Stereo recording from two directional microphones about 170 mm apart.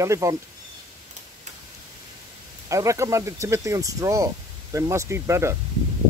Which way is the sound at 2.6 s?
20° right (ahead or behind).